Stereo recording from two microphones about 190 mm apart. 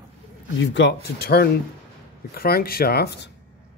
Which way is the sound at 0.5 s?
70° left (ahead or behind).